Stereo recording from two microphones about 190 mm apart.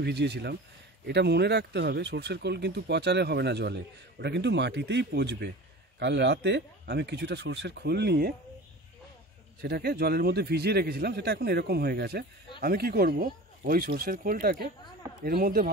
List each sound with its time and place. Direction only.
0.0 s speech: 60° right (ahead or behind)
9.6 s a man's voice: 55° right (ahead or behind)